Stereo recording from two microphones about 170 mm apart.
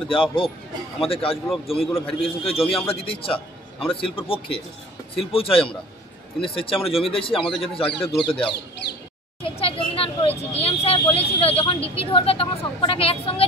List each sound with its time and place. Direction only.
0.1 s a man's voice: 30° left (ahead or behind)